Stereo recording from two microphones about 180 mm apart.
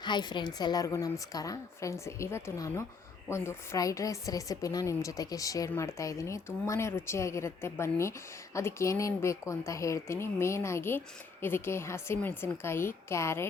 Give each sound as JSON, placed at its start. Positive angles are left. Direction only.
{"t": 0.0, "sound": "a woman's voice", "side_deg": 25}